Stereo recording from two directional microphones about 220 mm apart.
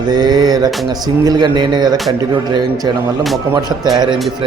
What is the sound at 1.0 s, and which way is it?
Speech, 15° right (ahead or behind).